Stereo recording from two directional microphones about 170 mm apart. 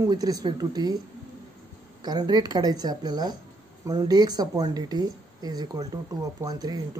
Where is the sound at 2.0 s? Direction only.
25° right (ahead or behind).